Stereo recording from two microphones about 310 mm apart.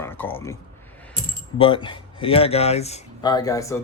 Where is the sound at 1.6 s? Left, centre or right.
Centre.